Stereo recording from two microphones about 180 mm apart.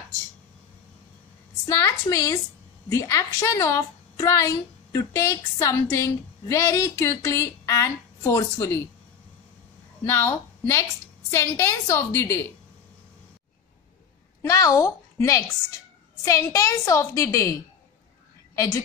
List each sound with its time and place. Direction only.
1.7 s a woman's voice: 15° left (ahead or behind)
10.0 s a woman's voice: 15° left (ahead or behind)
14.4 s a woman's voice: 20° left (ahead or behind)
18.5 s a sound: 15° left (ahead or behind)